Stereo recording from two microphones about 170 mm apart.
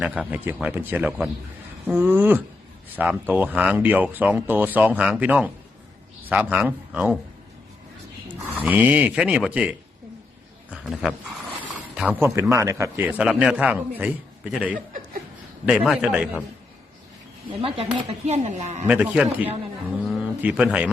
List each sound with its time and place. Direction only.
0.0 s a man's voice: 5° right (ahead or behind)
8.5 s a man's voice: 10° right (ahead or behind)
17.6 s speech: 35° right (ahead or behind)
18.9 s a man's voice: 5° right (ahead or behind)
20.1 s pigeon: 5° right (ahead or behind)